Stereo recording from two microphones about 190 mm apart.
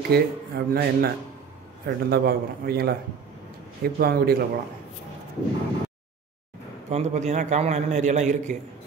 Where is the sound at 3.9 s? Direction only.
55° right (ahead or behind).